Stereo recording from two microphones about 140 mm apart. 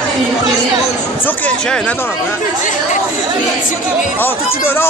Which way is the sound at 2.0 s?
15° left (ahead or behind).